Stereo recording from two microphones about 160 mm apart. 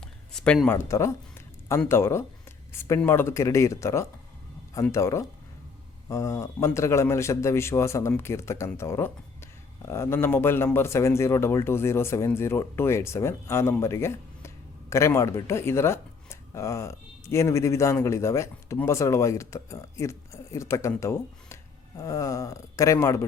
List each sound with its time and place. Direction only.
0.0 s speech: 5° left (ahead or behind)